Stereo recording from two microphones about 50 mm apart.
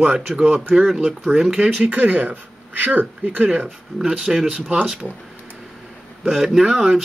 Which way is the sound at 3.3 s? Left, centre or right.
Right.